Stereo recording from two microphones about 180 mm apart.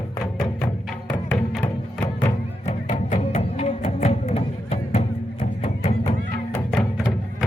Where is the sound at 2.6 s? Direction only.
40° left (ahead or behind).